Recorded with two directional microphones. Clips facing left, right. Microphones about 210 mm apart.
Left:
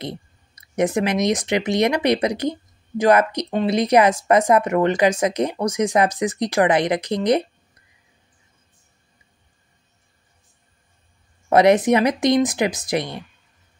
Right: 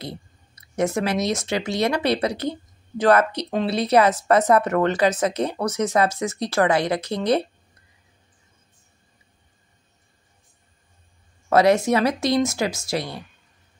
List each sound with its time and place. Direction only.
0.0 s speech: 20° left (ahead or behind)
11.4 s speech: 20° left (ahead or behind)